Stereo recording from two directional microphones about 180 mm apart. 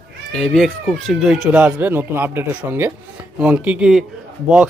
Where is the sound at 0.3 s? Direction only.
Centre (ahead or behind).